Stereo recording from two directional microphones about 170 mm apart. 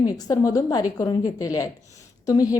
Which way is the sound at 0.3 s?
20° left (ahead or behind).